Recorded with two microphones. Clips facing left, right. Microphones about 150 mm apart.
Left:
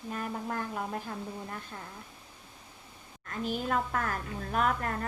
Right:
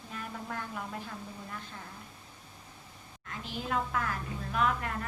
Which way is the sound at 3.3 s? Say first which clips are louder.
Left 4 dB; 45° left (ahead or behind).